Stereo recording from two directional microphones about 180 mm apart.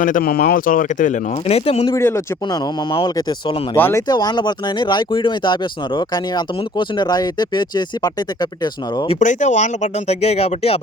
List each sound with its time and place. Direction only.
0.0 s speech: 50° left (ahead or behind); by 1.9 s 35° left (ahead or behind)
1.9 s speech: 15° left (ahead or behind)
2.9 s speech: 25° left (ahead or behind)
3.8 s speech: 10° left (ahead or behind)
4.1 s speech: 25° left (ahead or behind)
9.1 s speech: 45° left (ahead or behind)